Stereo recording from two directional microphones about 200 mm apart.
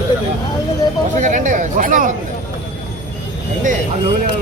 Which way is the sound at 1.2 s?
40° right (ahead or behind).